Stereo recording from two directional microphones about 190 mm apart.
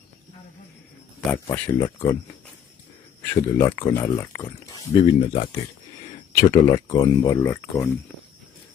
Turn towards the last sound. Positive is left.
turn(degrees=10)  # may be behind; listen again after turning